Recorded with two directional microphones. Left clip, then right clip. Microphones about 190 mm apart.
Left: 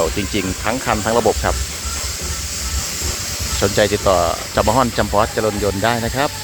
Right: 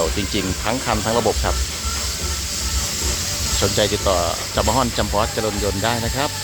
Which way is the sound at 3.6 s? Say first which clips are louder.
Left 5 dB; 15° left (ahead or behind).